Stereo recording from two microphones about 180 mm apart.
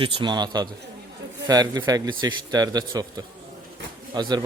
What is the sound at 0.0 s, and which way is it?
A man's voice, 30° right (ahead or behind).